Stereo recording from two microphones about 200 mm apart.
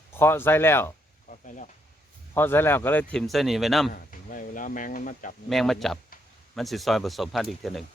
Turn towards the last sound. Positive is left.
turn(degrees=0)  # may be behind; listen again after turning